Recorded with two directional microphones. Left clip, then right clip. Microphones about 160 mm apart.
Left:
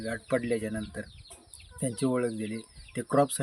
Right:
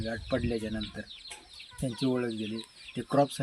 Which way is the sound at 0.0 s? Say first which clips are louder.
Left 2 dB; 25° left (ahead or behind).